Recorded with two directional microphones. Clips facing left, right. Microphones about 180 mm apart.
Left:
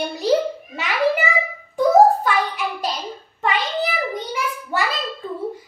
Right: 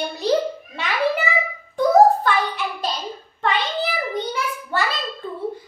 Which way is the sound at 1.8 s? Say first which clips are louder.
Left 1 dB; 5° left (ahead or behind).